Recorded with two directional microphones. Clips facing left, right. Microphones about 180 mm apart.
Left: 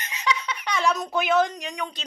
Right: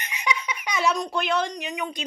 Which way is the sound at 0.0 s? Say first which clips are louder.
Left 1 dB; 15° right (ahead or behind).